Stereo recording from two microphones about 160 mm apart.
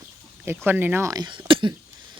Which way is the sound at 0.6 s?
15° right (ahead or behind).